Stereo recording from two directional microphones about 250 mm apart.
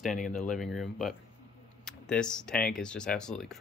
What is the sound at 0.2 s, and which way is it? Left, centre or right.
Speech, left.